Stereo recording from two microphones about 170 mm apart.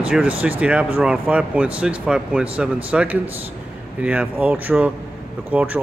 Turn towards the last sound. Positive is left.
turn(degrees=-10)  # may be behind; listen again after turning